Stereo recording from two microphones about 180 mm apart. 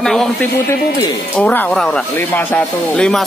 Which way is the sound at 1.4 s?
10° left (ahead or behind).